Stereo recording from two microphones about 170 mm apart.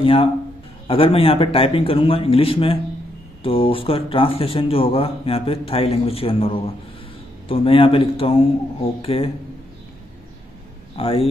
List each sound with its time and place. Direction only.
0.0 s speech: 30° left (ahead or behind)
11.0 s speech: 35° left (ahead or behind)